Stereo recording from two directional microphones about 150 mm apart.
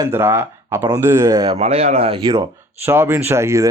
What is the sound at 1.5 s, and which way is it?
Speech, 45° right (ahead or behind).